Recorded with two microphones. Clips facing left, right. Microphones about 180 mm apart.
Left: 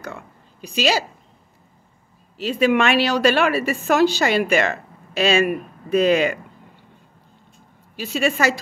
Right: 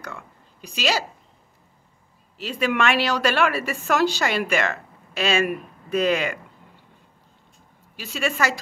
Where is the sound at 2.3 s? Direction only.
25° left (ahead or behind).